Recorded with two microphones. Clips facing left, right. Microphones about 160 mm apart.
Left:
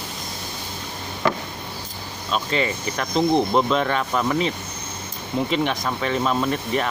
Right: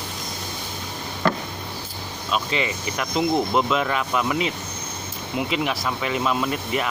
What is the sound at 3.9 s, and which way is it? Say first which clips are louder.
Speech: left 1 dB; 35° left (ahead or behind).